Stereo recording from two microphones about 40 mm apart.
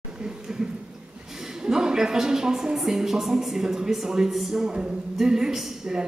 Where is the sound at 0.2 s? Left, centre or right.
Centre.